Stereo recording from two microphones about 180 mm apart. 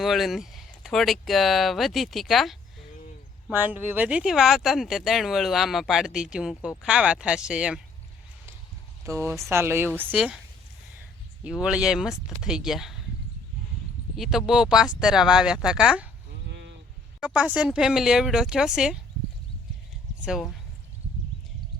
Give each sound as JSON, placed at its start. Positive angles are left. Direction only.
{"t": 0.0, "sound": "speech", "side_deg": 0}
{"t": 3.5, "sound": "speech", "side_deg": -10}
{"t": 9.0, "sound": "speech", "side_deg": -15}
{"t": 11.6, "sound": "speech", "side_deg": -5}
{"t": 14.2, "sound": "speech", "side_deg": 0}
{"t": 16.5, "sound": "a sound", "side_deg": -75}
{"t": 17.2, "sound": "speech", "side_deg": -5}
{"t": 20.2, "sound": "speech", "side_deg": -5}